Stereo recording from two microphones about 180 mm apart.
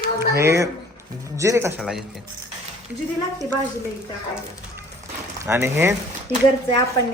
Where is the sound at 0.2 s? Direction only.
15° right (ahead or behind).